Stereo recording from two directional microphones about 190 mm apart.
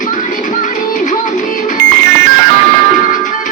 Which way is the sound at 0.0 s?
45° left (ahead or behind).